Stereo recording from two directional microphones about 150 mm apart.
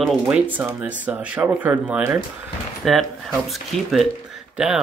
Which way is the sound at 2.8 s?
Centre (ahead or behind).